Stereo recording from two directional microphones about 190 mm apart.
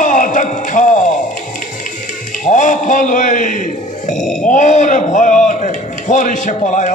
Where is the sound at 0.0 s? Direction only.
45° left (ahead or behind).